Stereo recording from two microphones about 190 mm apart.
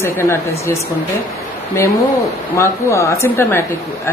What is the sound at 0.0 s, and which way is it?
Speech, 15° left (ahead or behind).